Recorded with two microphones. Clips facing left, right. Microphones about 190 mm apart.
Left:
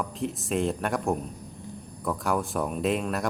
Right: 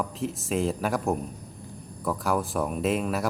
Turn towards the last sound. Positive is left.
turn(degrees=0)  # may be behind; listen again after turning